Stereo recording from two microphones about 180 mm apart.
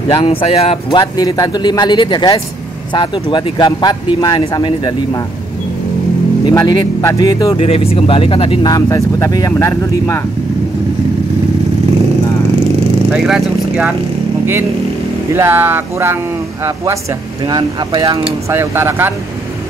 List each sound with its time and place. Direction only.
0.1 s speech: 30° left (ahead or behind)
6.5 s speech: 20° left (ahead or behind)
8.7 s speech: 20° left (ahead or behind)
13.1 s speech: 5° right (ahead or behind)
15.3 s speech: 15° right (ahead or behind)